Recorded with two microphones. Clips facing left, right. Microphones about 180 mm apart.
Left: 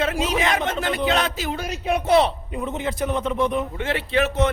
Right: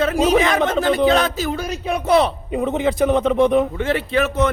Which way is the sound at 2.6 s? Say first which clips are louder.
Right 8 dB; 75° right (ahead or behind).